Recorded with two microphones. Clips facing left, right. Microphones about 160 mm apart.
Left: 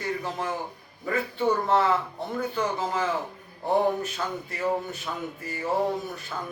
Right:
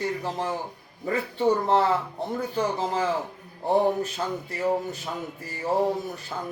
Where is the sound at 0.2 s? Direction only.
35° right (ahead or behind).